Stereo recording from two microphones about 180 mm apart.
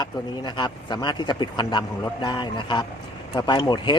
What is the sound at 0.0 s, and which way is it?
Speech, 25° left (ahead or behind).